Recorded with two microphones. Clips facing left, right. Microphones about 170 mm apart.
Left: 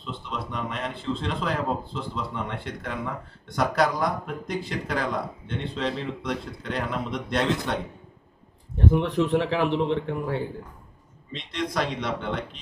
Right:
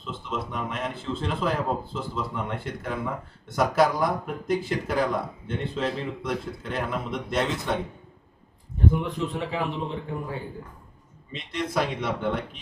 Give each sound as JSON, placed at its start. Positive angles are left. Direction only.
{"t": 0.0, "sound": "speech", "side_deg": -5}
{"t": 9.0, "sound": "a man's voice", "side_deg": 75}
{"t": 11.3, "sound": "speech", "side_deg": -5}